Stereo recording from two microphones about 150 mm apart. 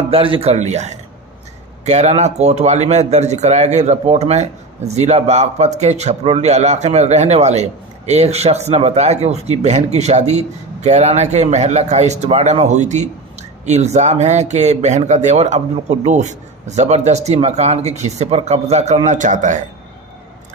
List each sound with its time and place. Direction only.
0.1 s speech: 40° right (ahead or behind); by 19.6 s 60° right (ahead or behind)